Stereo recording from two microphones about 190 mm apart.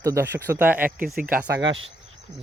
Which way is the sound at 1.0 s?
50° right (ahead or behind).